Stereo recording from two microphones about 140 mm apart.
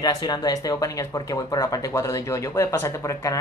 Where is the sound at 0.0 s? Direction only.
30° left (ahead or behind).